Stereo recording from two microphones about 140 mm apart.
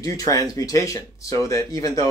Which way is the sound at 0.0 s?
25° left (ahead or behind).